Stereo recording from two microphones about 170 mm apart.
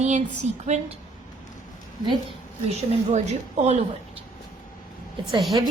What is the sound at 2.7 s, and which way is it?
A woman's voice, 40° right (ahead or behind).